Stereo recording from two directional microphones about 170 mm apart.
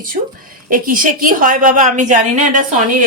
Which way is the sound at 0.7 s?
55° right (ahead or behind).